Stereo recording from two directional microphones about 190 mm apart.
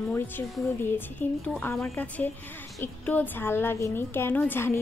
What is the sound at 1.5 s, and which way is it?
A woman's voice, 10° left (ahead or behind).